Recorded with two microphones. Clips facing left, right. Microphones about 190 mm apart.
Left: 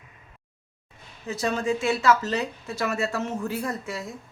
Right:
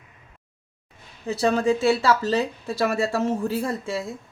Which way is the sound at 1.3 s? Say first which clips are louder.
Right 5 dB; 35° right (ahead or behind).